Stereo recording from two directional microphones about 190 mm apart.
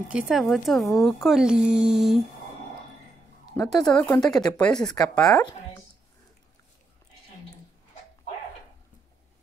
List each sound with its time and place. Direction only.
0.1 s speech: 5° right (ahead or behind)
3.5 s speech: 5° left (ahead or behind)
4.8 s speech: 20° left (ahead or behind)